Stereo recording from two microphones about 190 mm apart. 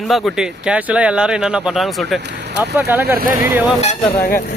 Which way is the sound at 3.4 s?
10° right (ahead or behind).